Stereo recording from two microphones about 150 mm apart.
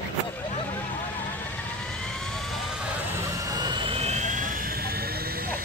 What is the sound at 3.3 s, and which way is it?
Vehicle, 25° right (ahead or behind).